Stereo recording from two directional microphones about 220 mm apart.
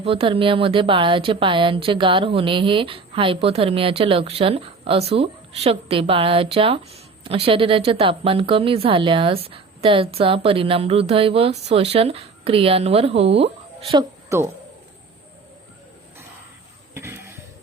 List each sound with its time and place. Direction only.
0.0 s speech: 25° right (ahead or behind)
13.9 s a woman's voice: 10° right (ahead or behind)
16.9 s a sound: 10° right (ahead or behind)